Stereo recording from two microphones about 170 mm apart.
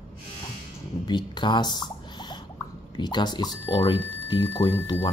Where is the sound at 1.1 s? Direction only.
25° left (ahead or behind).